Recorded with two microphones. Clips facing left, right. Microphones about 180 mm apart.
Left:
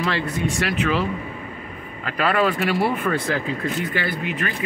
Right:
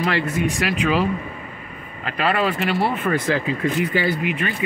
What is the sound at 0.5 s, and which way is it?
Speech, 15° right (ahead or behind).